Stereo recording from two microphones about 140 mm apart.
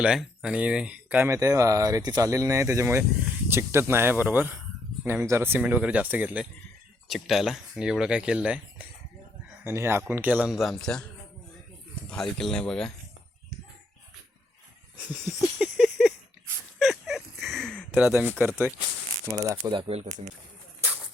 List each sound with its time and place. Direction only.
0.0 s speech: 5° right (ahead or behind)
12.1 s speech: 5° left (ahead or behind)
15.4 s a sound: centre (ahead or behind)
17.9 s speech: 15° right (ahead or behind)